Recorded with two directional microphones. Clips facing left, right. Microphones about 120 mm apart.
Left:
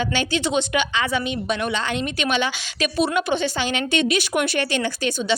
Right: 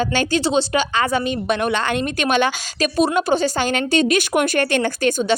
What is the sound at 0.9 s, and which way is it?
A woman's voice, 45° right (ahead or behind).